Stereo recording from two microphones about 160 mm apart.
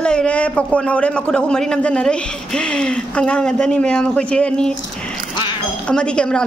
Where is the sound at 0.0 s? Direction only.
5° left (ahead or behind).